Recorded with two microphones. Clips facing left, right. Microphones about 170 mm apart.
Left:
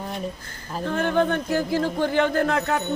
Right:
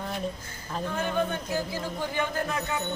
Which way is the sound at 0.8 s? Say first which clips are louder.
Left 6 dB; 65° left (ahead or behind).